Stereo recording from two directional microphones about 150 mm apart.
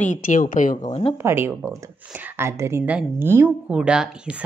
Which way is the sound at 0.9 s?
40° left (ahead or behind).